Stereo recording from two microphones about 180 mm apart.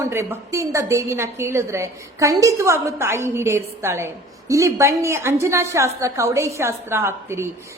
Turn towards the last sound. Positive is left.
turn(degrees=-15)  # may be behind; listen again after turning